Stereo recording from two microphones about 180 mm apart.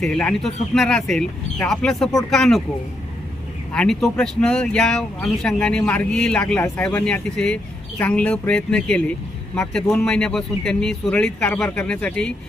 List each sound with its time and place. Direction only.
0.0 s speech: 5° left (ahead or behind)
3.7 s speech: 5° left (ahead or behind)